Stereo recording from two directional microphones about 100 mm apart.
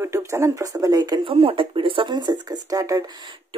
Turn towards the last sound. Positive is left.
turn(degrees=-35)  # may be behind; listen again after turning